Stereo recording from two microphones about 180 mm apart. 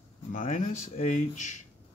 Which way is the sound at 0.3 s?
45° left (ahead or behind).